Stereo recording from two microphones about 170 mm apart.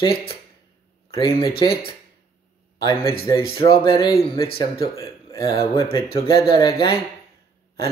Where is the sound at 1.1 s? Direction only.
30° left (ahead or behind).